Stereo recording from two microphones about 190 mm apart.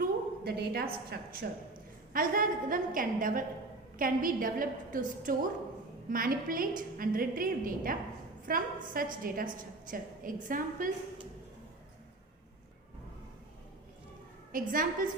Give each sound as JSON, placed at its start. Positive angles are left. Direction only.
{"t": 0.0, "sound": "a sound", "side_deg": -55}
{"t": 1.1, "sound": "a woman's voice", "side_deg": -50}
{"t": 14.5, "sound": "a woman's voice", "side_deg": -45}